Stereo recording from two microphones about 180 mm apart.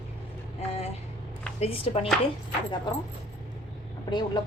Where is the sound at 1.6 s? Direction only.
35° left (ahead or behind).